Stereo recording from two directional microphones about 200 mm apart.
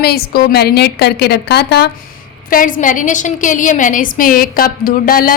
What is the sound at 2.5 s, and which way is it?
A woman's voice, 40° left (ahead or behind).